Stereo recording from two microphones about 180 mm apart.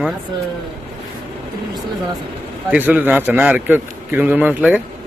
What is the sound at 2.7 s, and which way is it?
A man's voice, 10° right (ahead or behind).